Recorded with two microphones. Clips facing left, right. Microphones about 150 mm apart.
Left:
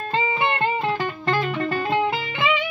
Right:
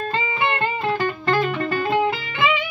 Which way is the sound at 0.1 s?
20° left (ahead or behind).